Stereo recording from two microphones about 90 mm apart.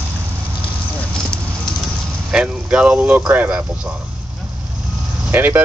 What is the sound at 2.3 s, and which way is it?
Speech, 10° right (ahead or behind).